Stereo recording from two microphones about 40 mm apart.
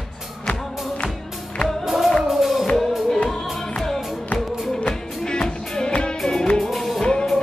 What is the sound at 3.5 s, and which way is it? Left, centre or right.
Music, centre.